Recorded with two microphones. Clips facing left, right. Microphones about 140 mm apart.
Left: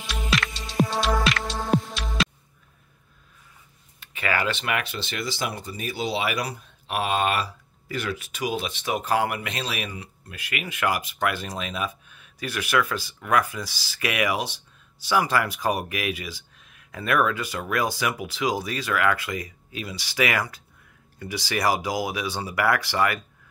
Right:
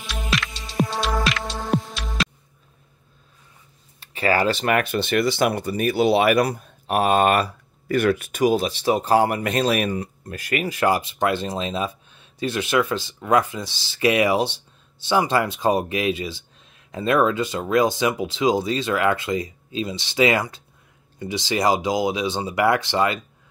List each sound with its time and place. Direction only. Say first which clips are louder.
0.0 s music: even; centre (ahead or behind)
4.0 s speech: right 6 dB; 35° right (ahead or behind)